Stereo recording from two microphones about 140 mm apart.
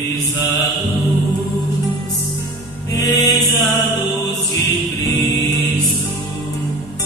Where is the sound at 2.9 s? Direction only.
25° left (ahead or behind).